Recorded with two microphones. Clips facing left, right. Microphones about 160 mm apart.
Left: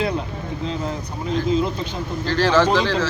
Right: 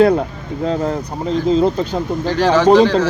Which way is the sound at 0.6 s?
45° right (ahead or behind).